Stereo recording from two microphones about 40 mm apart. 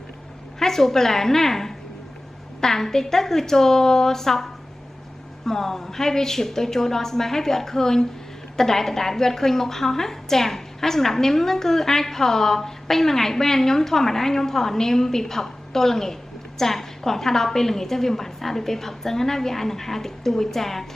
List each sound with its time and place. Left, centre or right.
0.6 s a woman's voice: centre